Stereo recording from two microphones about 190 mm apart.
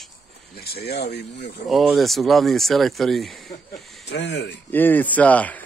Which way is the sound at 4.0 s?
65° left (ahead or behind).